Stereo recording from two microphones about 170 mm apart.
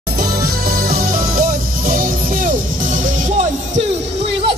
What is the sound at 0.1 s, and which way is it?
Music, 65° right (ahead or behind).